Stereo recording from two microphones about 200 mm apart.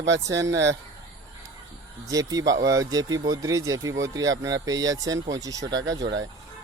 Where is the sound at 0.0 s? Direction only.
65° right (ahead or behind).